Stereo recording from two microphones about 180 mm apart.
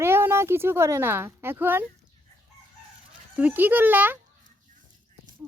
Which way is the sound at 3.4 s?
10° right (ahead or behind).